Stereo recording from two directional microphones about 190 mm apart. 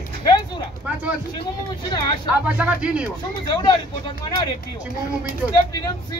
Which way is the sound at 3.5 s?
20° left (ahead or behind).